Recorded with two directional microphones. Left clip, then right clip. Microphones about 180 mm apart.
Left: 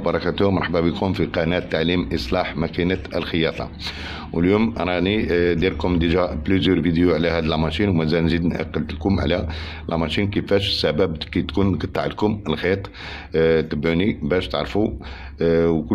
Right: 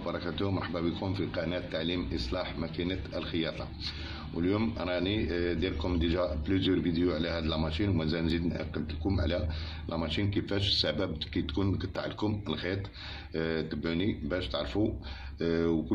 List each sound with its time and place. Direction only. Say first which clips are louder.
0.1 s a man's voice: left 13 dB; 60° left (ahead or behind)